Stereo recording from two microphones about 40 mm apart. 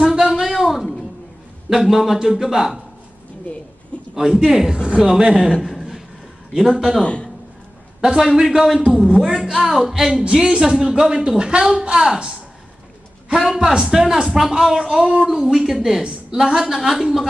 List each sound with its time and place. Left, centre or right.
0.0 s a sound: centre
1.7 s a man's voice: centre
4.1 s a man's voice: centre
7.0 s a man's voice: left
8.0 s a man's voice: centre
10.2 s a woman's voice: centre
13.4 s a man's voice: centre
15.2 s a man's voice: centre